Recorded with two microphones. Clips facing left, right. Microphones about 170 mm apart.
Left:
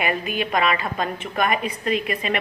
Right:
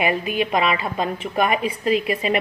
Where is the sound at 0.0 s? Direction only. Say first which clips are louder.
Right 3 dB; 5° right (ahead or behind).